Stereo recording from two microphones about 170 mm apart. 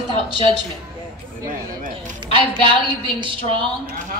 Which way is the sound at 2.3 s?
30° right (ahead or behind).